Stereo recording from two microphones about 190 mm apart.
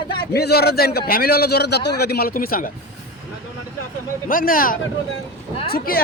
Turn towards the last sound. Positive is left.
turn(degrees=50)  # may be behind; listen again after turning